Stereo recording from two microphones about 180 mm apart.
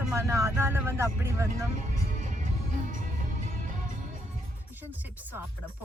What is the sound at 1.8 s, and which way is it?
Music, 40° right (ahead or behind).